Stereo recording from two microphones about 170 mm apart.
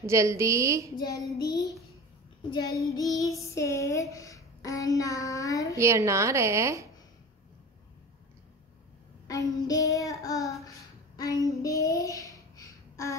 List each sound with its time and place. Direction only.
0.0 s a woman's voice: 15° right (ahead or behind)
0.9 s child singing: 25° left (ahead or behind)
5.8 s a woman's voice: 15° right (ahead or behind)
9.3 s child singing: 20° left (ahead or behind)